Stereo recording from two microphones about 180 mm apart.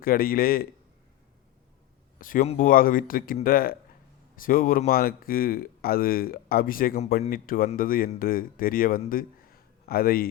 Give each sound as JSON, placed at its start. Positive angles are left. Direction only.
{"t": 0.0, "sound": "a man's voice", "side_deg": 55}
{"t": 2.1, "sound": "speech", "side_deg": 50}